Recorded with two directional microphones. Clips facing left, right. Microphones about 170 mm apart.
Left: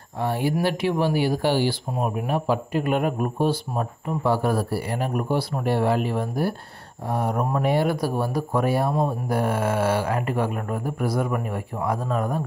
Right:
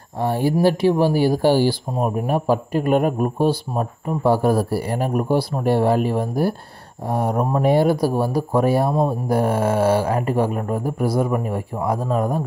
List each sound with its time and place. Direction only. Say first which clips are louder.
0.2 s speech: right 5 dB; 40° right (ahead or behind)